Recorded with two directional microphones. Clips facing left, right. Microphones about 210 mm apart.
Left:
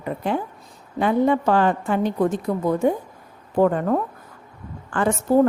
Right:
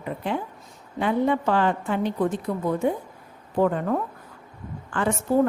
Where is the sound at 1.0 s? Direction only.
45° left (ahead or behind).